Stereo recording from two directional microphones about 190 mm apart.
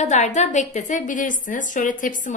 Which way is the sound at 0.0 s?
40° left (ahead or behind).